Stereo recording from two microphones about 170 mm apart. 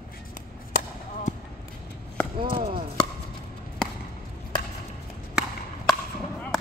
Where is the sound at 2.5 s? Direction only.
30° right (ahead or behind).